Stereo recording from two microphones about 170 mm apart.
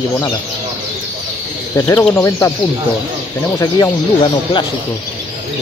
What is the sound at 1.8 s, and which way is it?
Speech, 15° left (ahead or behind).